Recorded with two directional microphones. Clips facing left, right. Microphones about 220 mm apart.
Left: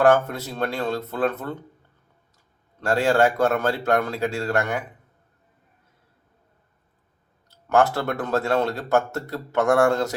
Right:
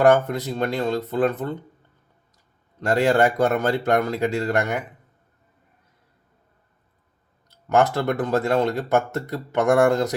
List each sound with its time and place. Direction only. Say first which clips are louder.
0.0 s speech: right 1 dB; 20° right (ahead or behind)
2.8 s speech: right 1 dB; 20° right (ahead or behind)
7.5 s speech: even; 15° right (ahead or behind)